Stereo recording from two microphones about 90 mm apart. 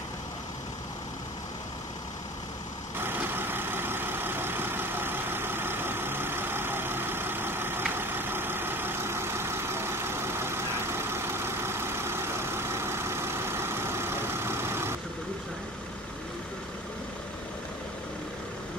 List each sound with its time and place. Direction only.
3.0 s vehicle: 25° right (ahead or behind)